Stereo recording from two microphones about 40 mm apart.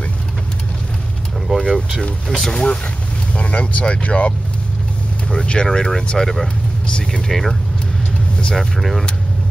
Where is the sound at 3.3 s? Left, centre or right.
Left.